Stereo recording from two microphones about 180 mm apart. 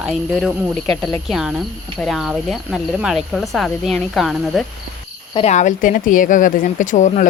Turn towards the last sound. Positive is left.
turn(degrees=45)  # may be behind; listen again after turning